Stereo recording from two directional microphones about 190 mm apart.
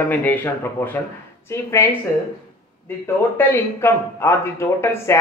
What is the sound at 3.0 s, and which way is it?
Speech, 10° left (ahead or behind).